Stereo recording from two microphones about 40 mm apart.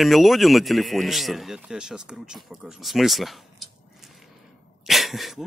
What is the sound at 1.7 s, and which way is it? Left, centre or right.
Speech, centre.